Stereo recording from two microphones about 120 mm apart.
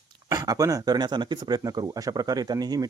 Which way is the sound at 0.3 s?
30° right (ahead or behind).